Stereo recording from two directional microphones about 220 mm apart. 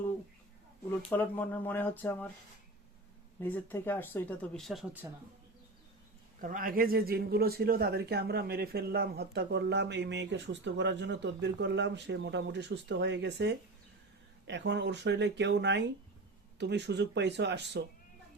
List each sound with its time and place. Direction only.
0.9 s speech: 10° left (ahead or behind)
3.4 s speech: 10° left (ahead or behind)
6.4 s speech: 40° right (ahead or behind)